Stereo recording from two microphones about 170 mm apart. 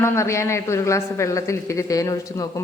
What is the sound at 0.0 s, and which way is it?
Speech, 15° left (ahead or behind).